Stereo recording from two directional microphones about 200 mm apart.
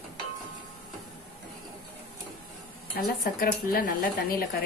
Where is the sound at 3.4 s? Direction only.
45° left (ahead or behind).